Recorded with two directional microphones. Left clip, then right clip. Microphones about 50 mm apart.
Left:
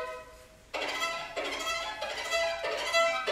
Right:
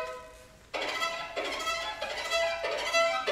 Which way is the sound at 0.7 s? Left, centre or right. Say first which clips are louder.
Right 1 dB; centre.